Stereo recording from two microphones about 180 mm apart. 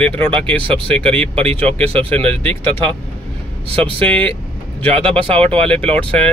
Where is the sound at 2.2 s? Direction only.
10° left (ahead or behind).